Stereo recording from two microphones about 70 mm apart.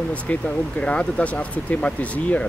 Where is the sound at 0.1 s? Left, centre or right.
Centre.